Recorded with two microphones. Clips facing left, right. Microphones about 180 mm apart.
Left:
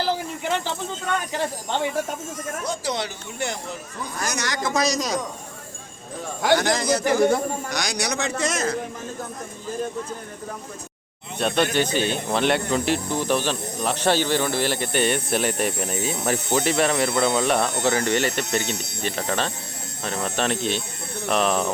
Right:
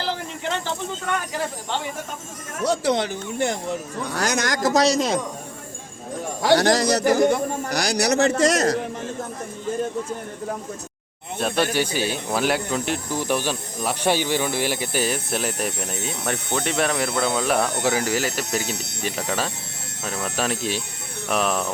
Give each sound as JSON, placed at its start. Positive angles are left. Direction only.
{"t": 2.6, "sound": "speech", "side_deg": -55}
{"t": 4.0, "sound": "speech", "side_deg": -70}
{"t": 4.4, "sound": "speech", "side_deg": -40}
{"t": 6.5, "sound": "speech", "side_deg": -35}
{"t": 11.3, "sound": "speech", "side_deg": -5}
{"t": 13.1, "sound": "speech", "side_deg": -10}